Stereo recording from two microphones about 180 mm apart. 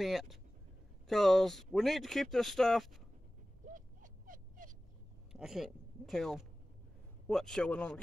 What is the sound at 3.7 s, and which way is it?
Owl, 45° right (ahead or behind).